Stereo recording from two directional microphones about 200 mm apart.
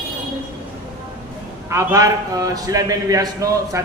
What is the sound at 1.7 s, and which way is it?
A man's voice, 15° right (ahead or behind).